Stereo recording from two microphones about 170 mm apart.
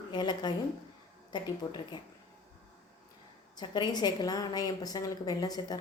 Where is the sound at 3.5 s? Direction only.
25° left (ahead or behind).